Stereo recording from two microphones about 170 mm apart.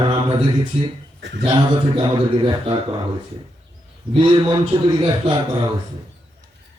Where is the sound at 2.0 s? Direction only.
30° right (ahead or behind).